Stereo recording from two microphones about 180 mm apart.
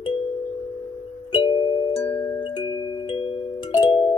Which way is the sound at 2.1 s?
15° left (ahead or behind).